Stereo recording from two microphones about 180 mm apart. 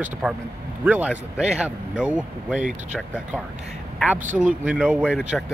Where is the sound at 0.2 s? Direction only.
5° right (ahead or behind).